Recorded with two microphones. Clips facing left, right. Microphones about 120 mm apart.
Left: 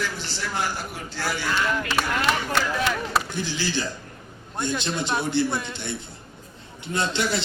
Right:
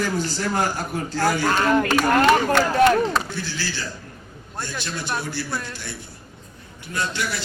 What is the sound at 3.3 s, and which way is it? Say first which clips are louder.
A man's voice: left 2 dB; 20° left (ahead or behind).